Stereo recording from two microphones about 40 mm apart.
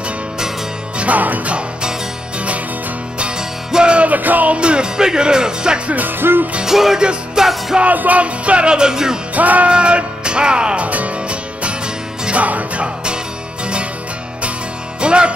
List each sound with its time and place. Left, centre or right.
0.9 s music: right
3.2 s music: right
4.2 s music: right
4.6 s music: right
6.0 s music: right
6.6 s music: centre
7.0 s music: right
7.8 s music: right; by 9.2 s centre
9.3 s music: right
9.7 s music: right
10.9 s music: right
15.0 s music: right